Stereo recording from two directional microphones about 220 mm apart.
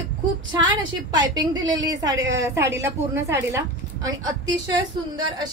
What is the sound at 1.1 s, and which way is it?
A woman's voice, 20° right (ahead or behind).